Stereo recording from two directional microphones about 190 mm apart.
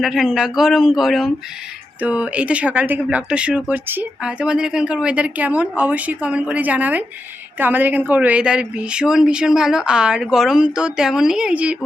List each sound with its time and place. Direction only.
0.0 s speech: centre (ahead or behind)